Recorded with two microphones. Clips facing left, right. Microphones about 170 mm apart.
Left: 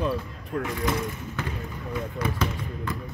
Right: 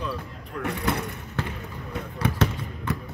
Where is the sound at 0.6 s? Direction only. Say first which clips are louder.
Right 1 dB; 65° right (ahead or behind).